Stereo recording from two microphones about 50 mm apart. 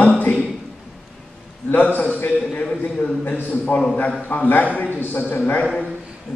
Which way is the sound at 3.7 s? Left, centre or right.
Left.